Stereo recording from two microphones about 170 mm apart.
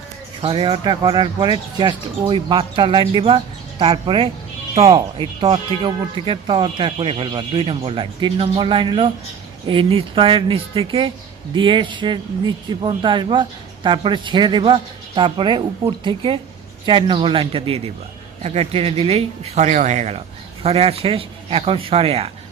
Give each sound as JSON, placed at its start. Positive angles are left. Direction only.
{"t": 0.4, "sound": "speech", "side_deg": -30}